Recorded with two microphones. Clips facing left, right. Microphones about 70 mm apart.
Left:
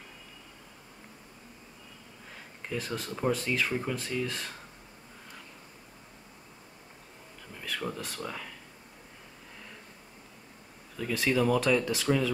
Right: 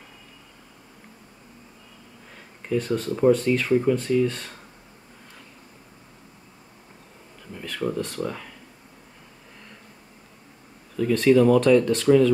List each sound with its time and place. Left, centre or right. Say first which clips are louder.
2.3 s speech: right 10 dB; centre
7.6 s speech: right 8 dB; centre
11.0 s speech: right 10 dB; centre